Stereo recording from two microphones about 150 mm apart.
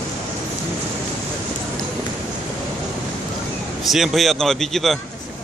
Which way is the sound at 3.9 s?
Centre (ahead or behind).